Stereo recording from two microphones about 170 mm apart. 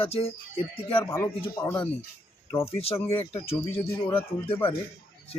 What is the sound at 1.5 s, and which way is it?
Speech, 15° left (ahead or behind).